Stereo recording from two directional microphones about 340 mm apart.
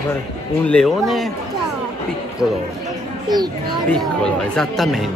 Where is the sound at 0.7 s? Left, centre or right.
Centre.